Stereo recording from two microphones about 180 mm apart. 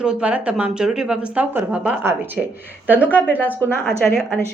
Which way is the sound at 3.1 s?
10° left (ahead or behind).